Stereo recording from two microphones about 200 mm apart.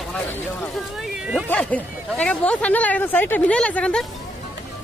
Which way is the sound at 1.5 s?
5° left (ahead or behind).